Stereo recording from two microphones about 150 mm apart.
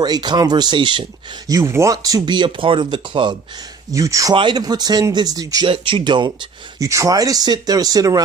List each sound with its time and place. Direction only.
0.0 s speech: 30° right (ahead or behind)
1.5 s speech: 20° right (ahead or behind)
3.9 s speech: 20° right (ahead or behind)
6.8 s speech: 20° right (ahead or behind)